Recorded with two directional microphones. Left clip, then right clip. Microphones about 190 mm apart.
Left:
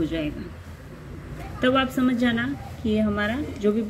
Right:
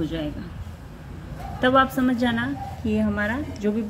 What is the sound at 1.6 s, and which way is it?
A woman's voice, 10° right (ahead or behind).